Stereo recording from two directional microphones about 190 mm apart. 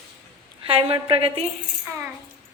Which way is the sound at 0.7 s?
30° right (ahead or behind).